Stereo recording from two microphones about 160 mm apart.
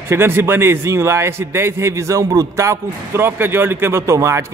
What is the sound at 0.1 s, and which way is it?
A man's voice, 15° right (ahead or behind).